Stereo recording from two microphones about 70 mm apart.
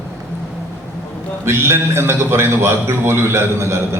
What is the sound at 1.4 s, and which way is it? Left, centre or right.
A man's voice, right.